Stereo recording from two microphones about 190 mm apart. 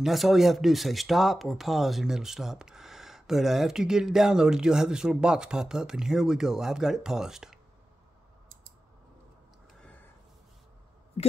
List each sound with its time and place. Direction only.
0.0 s speech: centre (ahead or behind)
11.2 s speech: 30° left (ahead or behind)